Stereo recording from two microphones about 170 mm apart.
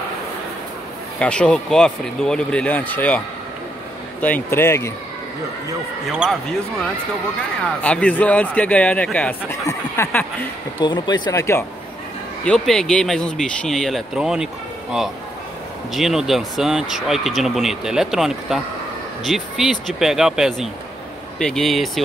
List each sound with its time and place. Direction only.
1.2 s speech: 5° left (ahead or behind)
4.2 s speech: 10° left (ahead or behind)
6.2 s speech: 5° right (ahead or behind)
7.8 s speech: 5° left (ahead or behind)
10.8 s speech: 25° left (ahead or behind)
12.4 s speech: 5° left (ahead or behind)